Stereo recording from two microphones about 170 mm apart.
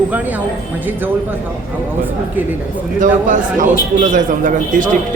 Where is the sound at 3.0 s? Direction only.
50° right (ahead or behind).